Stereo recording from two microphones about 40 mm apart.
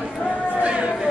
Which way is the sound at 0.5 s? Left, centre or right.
Right.